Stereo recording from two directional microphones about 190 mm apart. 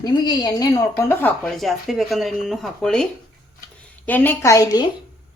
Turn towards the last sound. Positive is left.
turn(degrees=20)  # may be behind; listen again after turning